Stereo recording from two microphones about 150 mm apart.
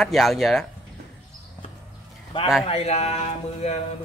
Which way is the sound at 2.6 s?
45° left (ahead or behind).